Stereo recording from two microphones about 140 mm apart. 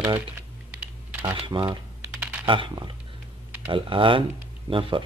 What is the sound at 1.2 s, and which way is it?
Speech, 30° right (ahead or behind).